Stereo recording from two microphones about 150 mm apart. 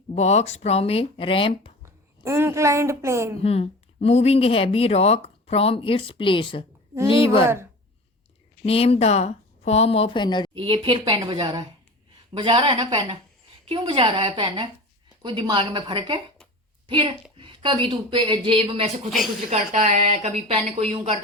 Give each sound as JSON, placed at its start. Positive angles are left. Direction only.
{"t": 0.1, "sound": "speech", "side_deg": 45}
{"t": 1.8, "sound": "speech", "side_deg": -20}
{"t": 3.4, "sound": "speech", "side_deg": 40}
{"t": 8.6, "sound": "speech", "side_deg": 40}
{"t": 10.6, "sound": "a woman's voice", "side_deg": -35}
{"t": 19.5, "sound": "speech", "side_deg": -50}